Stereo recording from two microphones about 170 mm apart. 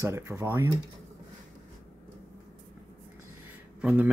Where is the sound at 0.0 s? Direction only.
15° right (ahead or behind).